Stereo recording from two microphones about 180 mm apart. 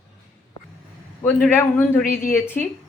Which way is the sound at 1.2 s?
5° left (ahead or behind).